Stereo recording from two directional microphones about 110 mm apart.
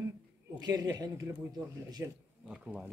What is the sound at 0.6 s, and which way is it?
Speech, 35° right (ahead or behind).